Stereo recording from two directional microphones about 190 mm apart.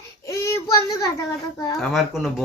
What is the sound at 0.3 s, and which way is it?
Child singing, 15° left (ahead or behind).